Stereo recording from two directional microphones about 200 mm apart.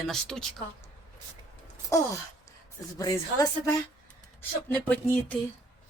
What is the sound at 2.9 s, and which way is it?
A woman's voice, 20° left (ahead or behind).